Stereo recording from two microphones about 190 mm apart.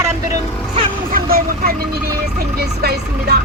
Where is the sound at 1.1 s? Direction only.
50° right (ahead or behind).